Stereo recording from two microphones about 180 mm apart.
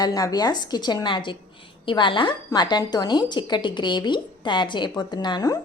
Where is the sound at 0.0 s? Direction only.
20° left (ahead or behind).